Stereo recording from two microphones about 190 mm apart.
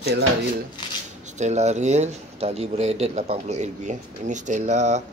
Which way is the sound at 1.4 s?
35° right (ahead or behind).